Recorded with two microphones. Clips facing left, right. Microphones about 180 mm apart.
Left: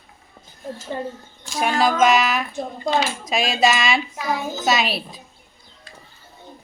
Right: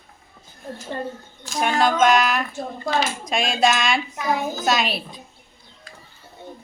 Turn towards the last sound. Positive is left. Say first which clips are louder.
# left 1 dB
turn(degrees=0)  # may be behind; listen again after turning